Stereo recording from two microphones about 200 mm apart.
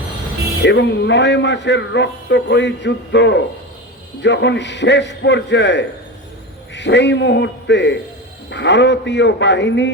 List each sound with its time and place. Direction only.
0.6 s a man's voice: 60° left (ahead or behind)